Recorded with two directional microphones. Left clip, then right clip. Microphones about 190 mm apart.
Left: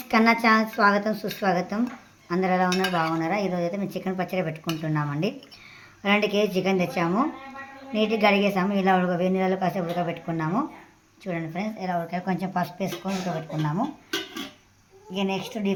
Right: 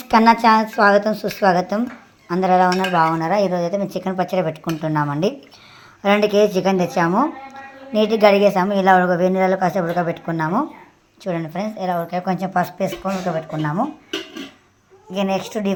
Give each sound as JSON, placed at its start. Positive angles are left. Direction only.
{"t": 0.0, "sound": "a woman's voice", "side_deg": -15}
{"t": 2.3, "sound": "cutlery", "side_deg": -15}
{"t": 6.0, "sound": "a woman's voice", "side_deg": -20}
{"t": 7.9, "sound": "cutlery", "side_deg": -20}
{"t": 13.6, "sound": "a woman's voice", "side_deg": -20}
{"t": 15.1, "sound": "cutlery", "side_deg": -20}